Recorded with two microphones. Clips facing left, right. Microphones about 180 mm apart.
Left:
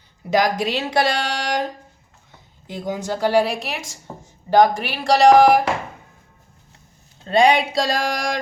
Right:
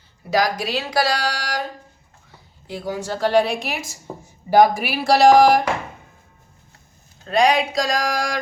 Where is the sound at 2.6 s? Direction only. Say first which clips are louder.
Left 1 dB; 20° left (ahead or behind); by 5.6 s centre (ahead or behind).